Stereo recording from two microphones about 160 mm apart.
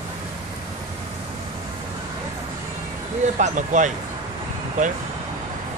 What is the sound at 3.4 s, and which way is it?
Speech, 50° right (ahead or behind).